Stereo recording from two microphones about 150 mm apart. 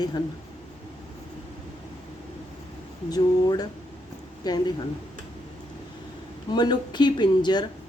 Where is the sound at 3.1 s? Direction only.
25° left (ahead or behind).